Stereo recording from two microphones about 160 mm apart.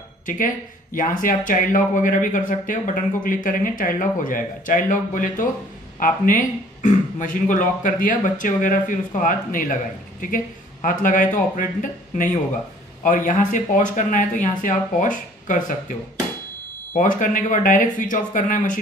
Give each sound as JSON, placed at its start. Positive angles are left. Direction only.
{"t": 0.9, "sound": "speech", "side_deg": 55}